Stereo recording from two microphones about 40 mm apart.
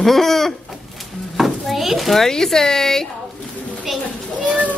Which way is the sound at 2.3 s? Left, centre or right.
Centre.